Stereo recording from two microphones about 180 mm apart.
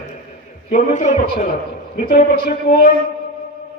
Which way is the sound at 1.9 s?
60° left (ahead or behind).